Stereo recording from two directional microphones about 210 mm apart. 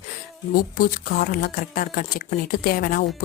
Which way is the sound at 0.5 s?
45° left (ahead or behind).